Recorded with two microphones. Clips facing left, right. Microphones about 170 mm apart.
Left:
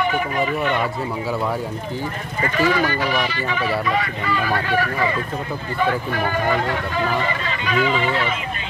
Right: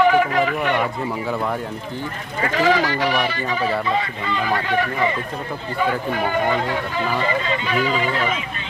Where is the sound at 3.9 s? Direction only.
25° right (ahead or behind).